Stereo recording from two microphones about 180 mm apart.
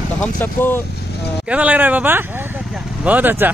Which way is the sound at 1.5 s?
10° right (ahead or behind).